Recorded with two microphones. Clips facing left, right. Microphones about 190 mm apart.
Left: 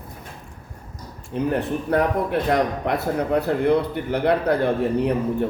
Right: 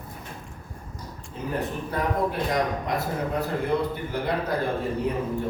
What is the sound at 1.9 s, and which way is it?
A man's voice, 65° left (ahead or behind).